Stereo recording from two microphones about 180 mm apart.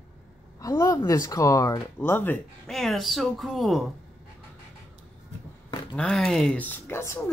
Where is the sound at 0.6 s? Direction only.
20° left (ahead or behind).